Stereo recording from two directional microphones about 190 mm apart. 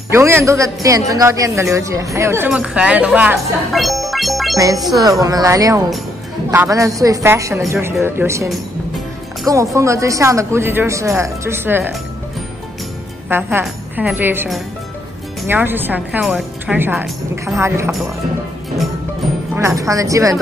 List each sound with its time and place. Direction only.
0.1 s a man's voice: 15° right (ahead or behind)
5.2 s a man's voice: 20° right (ahead or behind)
9.8 s a man's voice: 15° right (ahead or behind)
13.3 s a man's voice: 10° right (ahead or behind)
17.6 s a man's voice: 15° right (ahead or behind)
19.5 s a man's voice: 15° right (ahead or behind)